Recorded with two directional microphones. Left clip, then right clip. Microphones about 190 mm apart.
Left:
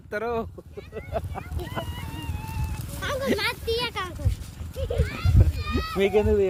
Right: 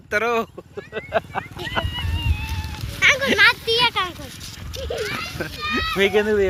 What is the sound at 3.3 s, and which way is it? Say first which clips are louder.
Speech: right 11 dB; 20° right (ahead or behind).